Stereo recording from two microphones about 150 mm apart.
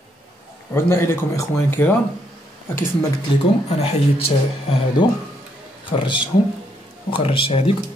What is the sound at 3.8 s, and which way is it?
Speech, 40° left (ahead or behind).